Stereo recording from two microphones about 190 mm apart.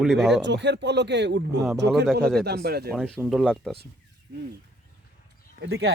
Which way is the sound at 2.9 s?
5° left (ahead or behind).